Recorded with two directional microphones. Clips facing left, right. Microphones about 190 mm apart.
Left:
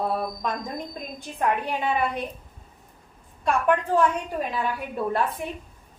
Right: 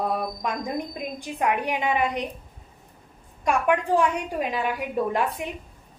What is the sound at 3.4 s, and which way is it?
A woman's voice, 15° right (ahead or behind).